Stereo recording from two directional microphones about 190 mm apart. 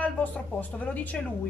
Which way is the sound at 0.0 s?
10° left (ahead or behind).